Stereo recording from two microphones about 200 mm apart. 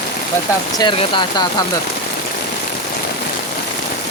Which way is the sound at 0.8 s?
25° left (ahead or behind).